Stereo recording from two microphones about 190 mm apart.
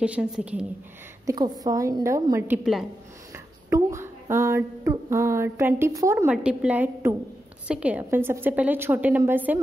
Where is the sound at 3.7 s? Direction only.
15° right (ahead or behind).